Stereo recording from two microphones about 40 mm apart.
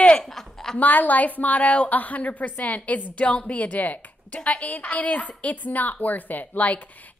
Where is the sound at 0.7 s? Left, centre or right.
Left.